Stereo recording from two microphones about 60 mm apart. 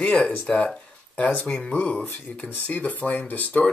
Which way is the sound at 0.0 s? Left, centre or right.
Left.